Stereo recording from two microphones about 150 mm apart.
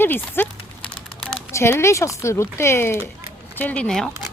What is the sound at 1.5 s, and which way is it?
Speech, 20° left (ahead or behind).